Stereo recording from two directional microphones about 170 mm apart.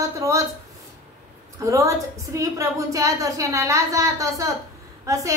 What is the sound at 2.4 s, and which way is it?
A woman's voice, 20° right (ahead or behind).